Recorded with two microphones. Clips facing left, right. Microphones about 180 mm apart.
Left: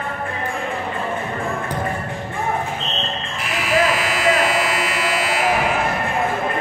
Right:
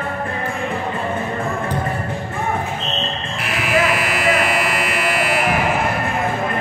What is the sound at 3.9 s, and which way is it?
Buzzer, 60° right (ahead or behind).